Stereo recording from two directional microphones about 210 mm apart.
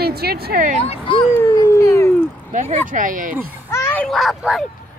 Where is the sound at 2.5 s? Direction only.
35° right (ahead or behind).